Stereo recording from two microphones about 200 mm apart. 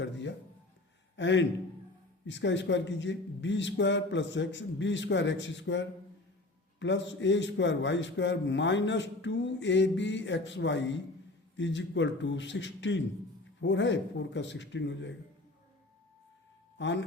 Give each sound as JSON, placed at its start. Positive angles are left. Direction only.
{"t": 0.0, "sound": "a sound", "side_deg": 65}
{"t": 1.1, "sound": "a man's voice", "side_deg": 65}
{"t": 16.7, "sound": "speech", "side_deg": 65}